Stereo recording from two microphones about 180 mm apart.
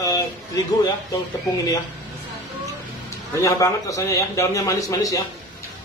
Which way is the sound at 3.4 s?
15° left (ahead or behind).